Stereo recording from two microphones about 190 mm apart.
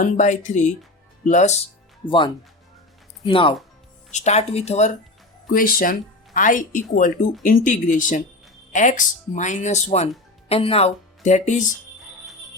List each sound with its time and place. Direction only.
0.0 s speech: 40° left (ahead or behind)
2.0 s speech: 25° left (ahead or behind)
5.5 s speech: 45° left (ahead or behind)